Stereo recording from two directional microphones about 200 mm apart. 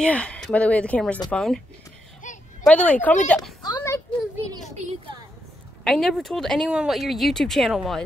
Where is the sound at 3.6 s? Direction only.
20° left (ahead or behind).